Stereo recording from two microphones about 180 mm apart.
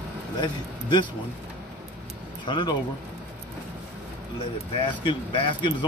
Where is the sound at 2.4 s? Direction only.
25° left (ahead or behind).